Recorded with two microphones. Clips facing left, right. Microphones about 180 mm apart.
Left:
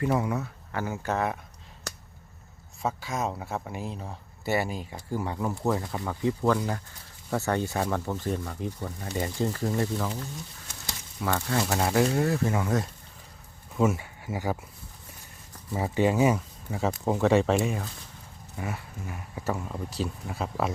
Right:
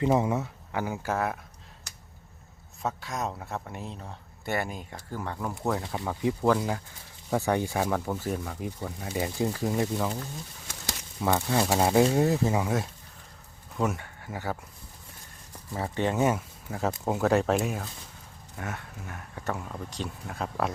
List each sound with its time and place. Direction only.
0.0 s speech: 20° right (ahead or behind); by 1.4 s 5° right (ahead or behind)
2.8 s speech: centre (ahead or behind)
6.1 s speech: 10° right (ahead or behind)
11.2 s speech: 20° right (ahead or behind)
13.7 s speech: 5° left (ahead or behind)
15.7 s speech: 10° left (ahead or behind)